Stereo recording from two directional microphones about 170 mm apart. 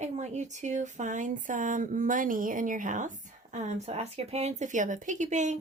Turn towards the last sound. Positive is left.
turn(degrees=-45)  # may be behind; listen again after turning